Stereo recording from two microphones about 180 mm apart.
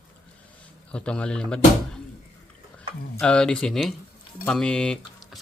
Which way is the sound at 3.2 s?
5° left (ahead or behind).